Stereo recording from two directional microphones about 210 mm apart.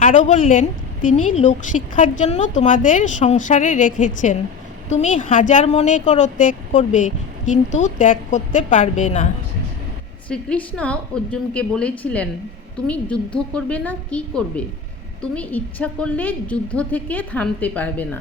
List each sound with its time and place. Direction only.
0.0 s speech: 35° left (ahead or behind)
10.2 s a woman's voice: 5° left (ahead or behind)